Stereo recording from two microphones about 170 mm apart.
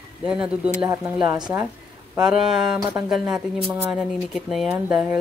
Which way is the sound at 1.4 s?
15° right (ahead or behind).